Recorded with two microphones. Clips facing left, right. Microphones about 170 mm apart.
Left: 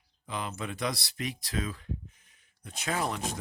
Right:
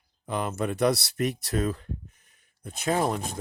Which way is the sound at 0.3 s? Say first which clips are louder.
Right 7 dB; 55° right (ahead or behind).